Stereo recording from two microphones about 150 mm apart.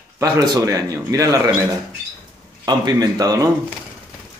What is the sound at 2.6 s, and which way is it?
Speech, 25° right (ahead or behind).